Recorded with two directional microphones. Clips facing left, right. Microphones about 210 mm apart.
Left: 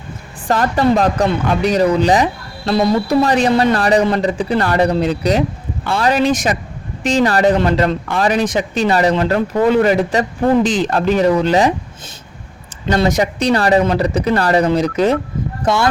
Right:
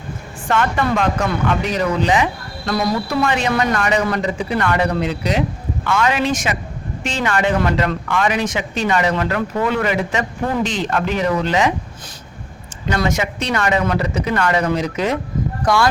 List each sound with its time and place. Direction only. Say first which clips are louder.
0.4 s speech: left 4 dB; 35° left (ahead or behind)
12.9 s speech: left 5 dB; 35° left (ahead or behind)
15.6 s speech: left 1 dB; 25° left (ahead or behind)